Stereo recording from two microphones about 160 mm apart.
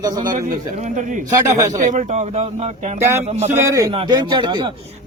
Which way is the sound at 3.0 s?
15° right (ahead or behind).